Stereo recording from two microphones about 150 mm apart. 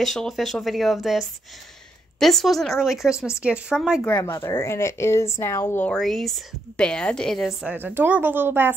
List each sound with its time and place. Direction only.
0.0 s a woman's voice: centre (ahead or behind)
4.0 s a woman's voice: 15° left (ahead or behind)
5.9 s a woman's voice: centre (ahead or behind)
7.7 s speech: 15° right (ahead or behind)